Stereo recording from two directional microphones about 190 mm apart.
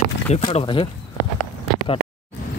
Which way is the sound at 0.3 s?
35° left (ahead or behind).